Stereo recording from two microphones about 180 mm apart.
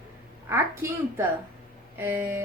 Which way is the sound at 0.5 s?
15° right (ahead or behind).